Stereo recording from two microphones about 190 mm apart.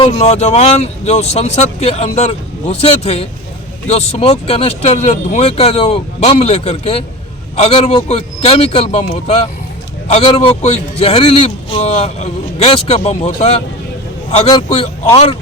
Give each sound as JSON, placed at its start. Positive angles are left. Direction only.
{"t": 0.0, "sound": "a man's voice", "side_deg": 35}